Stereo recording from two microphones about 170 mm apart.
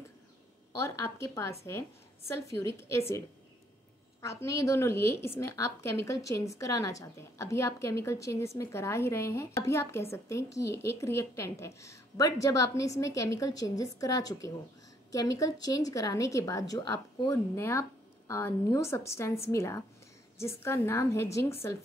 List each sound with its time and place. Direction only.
0.7 s a woman's voice: 15° left (ahead or behind)